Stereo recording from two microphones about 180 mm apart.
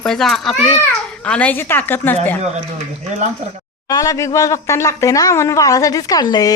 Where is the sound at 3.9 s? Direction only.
20° left (ahead or behind).